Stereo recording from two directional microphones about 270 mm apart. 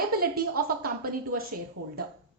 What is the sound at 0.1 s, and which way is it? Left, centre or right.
A woman's voice, right.